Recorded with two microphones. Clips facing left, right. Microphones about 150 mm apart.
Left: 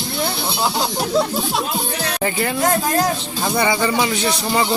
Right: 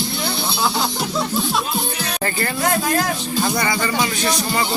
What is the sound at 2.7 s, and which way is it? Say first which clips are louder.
Speech: left 1 dB; 30° left (ahead or behind).